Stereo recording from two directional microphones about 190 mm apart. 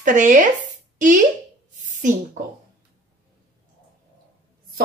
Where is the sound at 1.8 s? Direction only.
40° right (ahead or behind).